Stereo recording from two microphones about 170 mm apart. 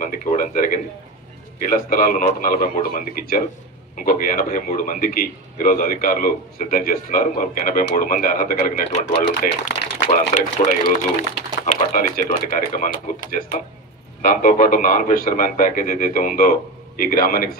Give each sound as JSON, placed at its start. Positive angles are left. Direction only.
{"t": 0.0, "sound": "a man's voice", "side_deg": 50}